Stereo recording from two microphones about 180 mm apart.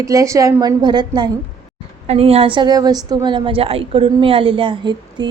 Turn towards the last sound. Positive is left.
turn(degrees=-25)  # may be behind; listen again after turning